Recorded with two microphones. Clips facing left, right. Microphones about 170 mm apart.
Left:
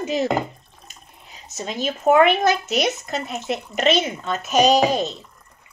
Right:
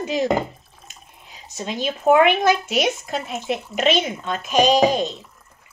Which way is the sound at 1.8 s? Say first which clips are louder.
Even; centre (ahead or behind).